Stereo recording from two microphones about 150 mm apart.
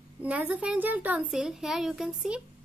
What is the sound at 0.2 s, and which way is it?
Speech, 10° right (ahead or behind).